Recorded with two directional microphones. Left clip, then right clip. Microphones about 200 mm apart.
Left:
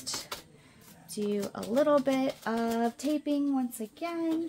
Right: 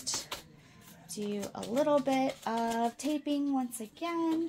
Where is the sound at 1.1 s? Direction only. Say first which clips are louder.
Left 5 dB; 35° left (ahead or behind).